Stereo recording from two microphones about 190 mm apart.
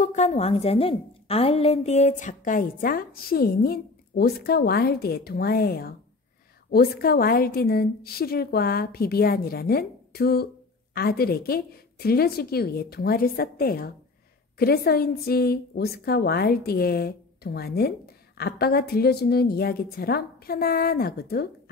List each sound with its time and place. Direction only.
0.0 s a woman's voice: 40° left (ahead or behind); by 21.5 s 55° left (ahead or behind)